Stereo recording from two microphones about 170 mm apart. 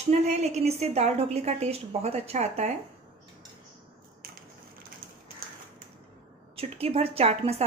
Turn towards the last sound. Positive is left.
turn(degrees=-35)  # may be behind; listen again after turning